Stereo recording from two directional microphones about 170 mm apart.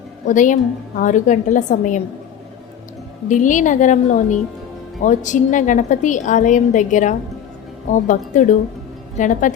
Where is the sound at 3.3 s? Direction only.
50° left (ahead or behind).